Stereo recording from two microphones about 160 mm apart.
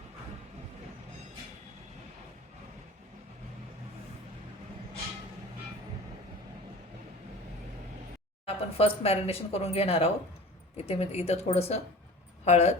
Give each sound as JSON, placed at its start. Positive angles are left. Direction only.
{"t": 8.4, "sound": "speech", "side_deg": 40}